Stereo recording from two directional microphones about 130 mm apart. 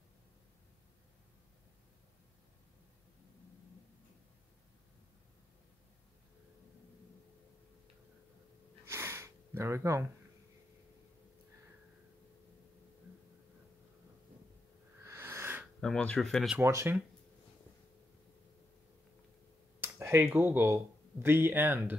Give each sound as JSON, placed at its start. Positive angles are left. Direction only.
{"t": 8.8, "sound": "sniff", "side_deg": -20}
{"t": 15.0, "sound": "a sound", "side_deg": -20}
{"t": 15.8, "sound": "speech", "side_deg": 5}
{"t": 16.5, "sound": "speech", "side_deg": -20}
{"t": 19.8, "sound": "a sound", "side_deg": -20}
{"t": 20.3, "sound": "speech", "side_deg": -15}